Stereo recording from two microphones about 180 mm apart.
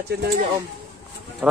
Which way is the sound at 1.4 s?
5° right (ahead or behind).